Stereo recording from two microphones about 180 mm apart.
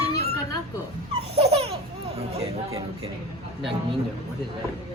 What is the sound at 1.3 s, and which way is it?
Laughter, 35° right (ahead or behind).